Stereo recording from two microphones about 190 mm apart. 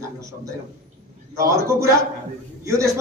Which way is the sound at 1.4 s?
15° right (ahead or behind).